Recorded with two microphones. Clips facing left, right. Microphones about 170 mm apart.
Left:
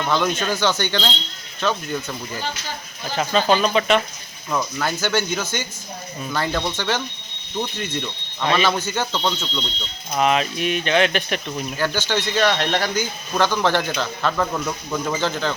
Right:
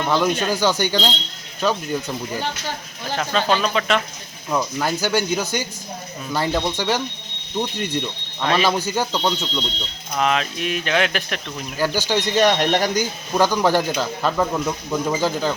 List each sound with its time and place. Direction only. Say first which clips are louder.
0.1 s speech: right 2 dB; 10° right (ahead or behind)
3.2 s speech: left 2 dB; 5° left (ahead or behind)
4.4 s speech: right 2 dB; 15° right (ahead or behind)
10.2 s speech: left 2 dB; 5° left (ahead or behind)
11.8 s speech: right 3 dB; 10° right (ahead or behind)